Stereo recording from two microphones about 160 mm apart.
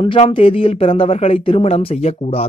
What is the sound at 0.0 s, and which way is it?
Speech, 30° left (ahead or behind).